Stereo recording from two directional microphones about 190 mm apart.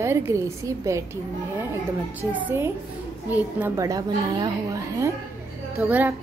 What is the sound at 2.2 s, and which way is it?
A woman's voice, 10° right (ahead or behind).